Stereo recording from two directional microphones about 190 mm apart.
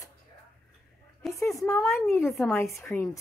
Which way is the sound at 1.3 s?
15° left (ahead or behind).